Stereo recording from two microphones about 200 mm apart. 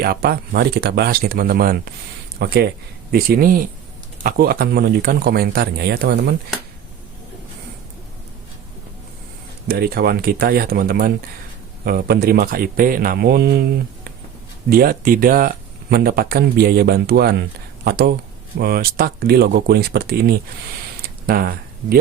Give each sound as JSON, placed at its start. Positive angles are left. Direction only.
{"t": 0.0, "sound": "speech", "side_deg": -50}
{"t": 9.6, "sound": "speech", "side_deg": -50}